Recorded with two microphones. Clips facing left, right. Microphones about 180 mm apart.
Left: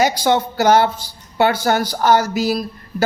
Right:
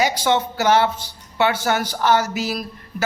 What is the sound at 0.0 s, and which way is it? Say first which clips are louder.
Speech: left 3 dB; 40° left (ahead or behind).